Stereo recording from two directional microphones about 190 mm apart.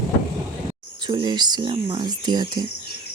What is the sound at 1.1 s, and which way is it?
Speech, 25° right (ahead or behind).